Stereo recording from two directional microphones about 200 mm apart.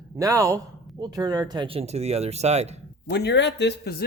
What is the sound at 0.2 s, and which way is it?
Speech, 15° right (ahead or behind).